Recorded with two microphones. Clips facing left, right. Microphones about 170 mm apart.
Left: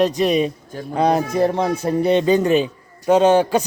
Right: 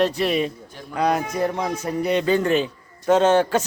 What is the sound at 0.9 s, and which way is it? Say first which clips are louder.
Speech: left 4 dB; 30° left (ahead or behind).